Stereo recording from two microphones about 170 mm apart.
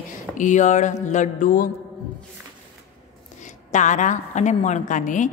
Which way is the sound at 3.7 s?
45° left (ahead or behind).